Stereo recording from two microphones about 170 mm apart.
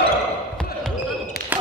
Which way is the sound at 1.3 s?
65° left (ahead or behind).